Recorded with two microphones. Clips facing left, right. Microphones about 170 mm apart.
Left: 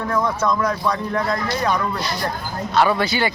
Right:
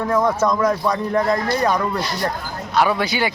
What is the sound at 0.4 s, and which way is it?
Speech, 20° right (ahead or behind).